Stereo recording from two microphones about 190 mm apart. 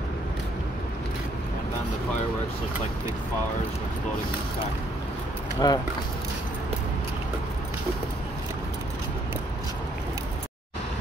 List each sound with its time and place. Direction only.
5.6 s speech: 20° left (ahead or behind)